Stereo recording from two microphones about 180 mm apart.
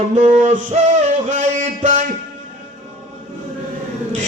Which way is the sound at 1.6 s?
40° right (ahead or behind).